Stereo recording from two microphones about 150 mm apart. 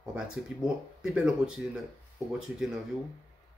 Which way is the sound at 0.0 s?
5° right (ahead or behind).